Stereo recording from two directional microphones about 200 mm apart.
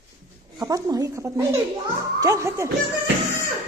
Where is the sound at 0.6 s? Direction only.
20° right (ahead or behind).